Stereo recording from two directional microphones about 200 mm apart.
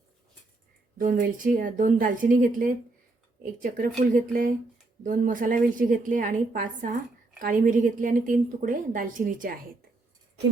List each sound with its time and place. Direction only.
0.9 s a woman's voice: 40° right (ahead or behind)